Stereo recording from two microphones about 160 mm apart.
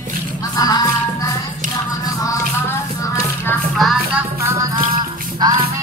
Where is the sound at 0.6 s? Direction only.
25° left (ahead or behind).